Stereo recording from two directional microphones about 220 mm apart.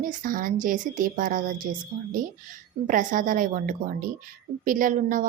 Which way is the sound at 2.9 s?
35° right (ahead or behind).